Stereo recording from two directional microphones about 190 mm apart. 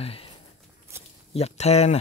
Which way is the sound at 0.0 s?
30° left (ahead or behind).